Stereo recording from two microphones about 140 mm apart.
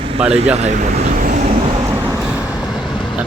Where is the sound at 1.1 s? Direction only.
75° right (ahead or behind).